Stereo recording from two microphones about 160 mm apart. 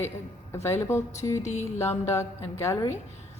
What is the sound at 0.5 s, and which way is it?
A woman's voice, 15° left (ahead or behind).